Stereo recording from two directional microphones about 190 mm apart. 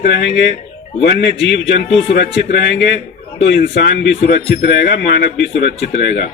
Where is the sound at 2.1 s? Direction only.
60° left (ahead or behind).